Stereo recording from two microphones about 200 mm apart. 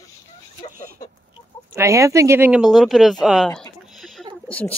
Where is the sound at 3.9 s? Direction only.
Centre (ahead or behind).